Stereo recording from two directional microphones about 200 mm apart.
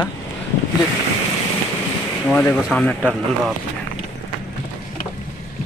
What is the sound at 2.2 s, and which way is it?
Speech, 5° left (ahead or behind).